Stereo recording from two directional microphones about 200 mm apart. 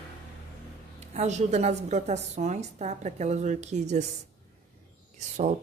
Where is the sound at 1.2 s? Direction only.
35° right (ahead or behind).